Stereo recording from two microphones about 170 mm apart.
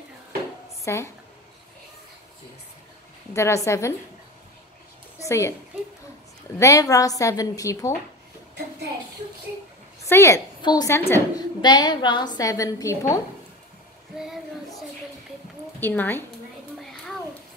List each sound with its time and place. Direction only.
0.8 s a woman's voice: 15° left (ahead or behind)
3.3 s a woman's voice: 15° left (ahead or behind)
5.2 s a woman's voice: 15° left (ahead or behind)
6.6 s a woman's voice: 20° left (ahead or behind)
10.0 s a woman's voice: 15° left (ahead or behind)
11.6 s a woman's voice: 25° left (ahead or behind)
14.1 s a sound: centre (ahead or behind)
15.8 s a woman's voice: 10° left (ahead or behind)